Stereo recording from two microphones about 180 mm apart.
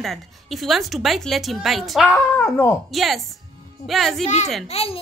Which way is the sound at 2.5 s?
15° left (ahead or behind).